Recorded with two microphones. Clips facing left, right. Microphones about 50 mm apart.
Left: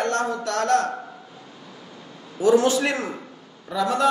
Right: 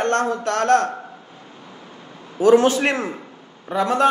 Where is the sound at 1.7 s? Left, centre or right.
Right.